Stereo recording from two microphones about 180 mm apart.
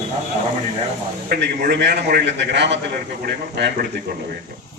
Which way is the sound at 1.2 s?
60° right (ahead or behind).